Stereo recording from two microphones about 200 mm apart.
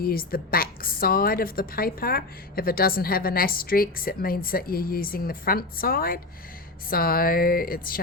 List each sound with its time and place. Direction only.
0.0 s a woman's voice: 45° left (ahead or behind)